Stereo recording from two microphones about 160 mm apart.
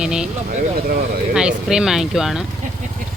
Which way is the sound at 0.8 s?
70° right (ahead or behind).